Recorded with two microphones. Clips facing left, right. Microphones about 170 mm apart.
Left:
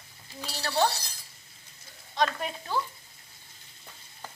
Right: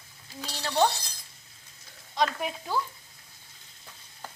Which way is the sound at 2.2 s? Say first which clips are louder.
Even; 10° right (ahead or behind).